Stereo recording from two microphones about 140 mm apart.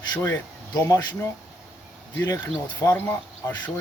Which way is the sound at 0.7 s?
30° left (ahead or behind).